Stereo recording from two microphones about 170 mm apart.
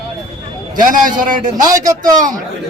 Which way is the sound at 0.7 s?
50° right (ahead or behind).